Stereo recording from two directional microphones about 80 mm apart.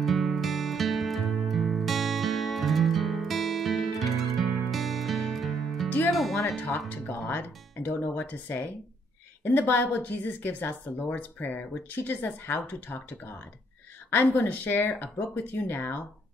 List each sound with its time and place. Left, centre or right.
0.0 s music: centre
6.9 s speech: left